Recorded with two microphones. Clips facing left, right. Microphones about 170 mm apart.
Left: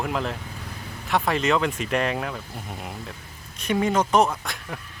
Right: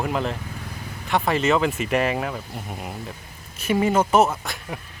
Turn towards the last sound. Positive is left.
turn(degrees=-5)  # may be behind; listen again after turning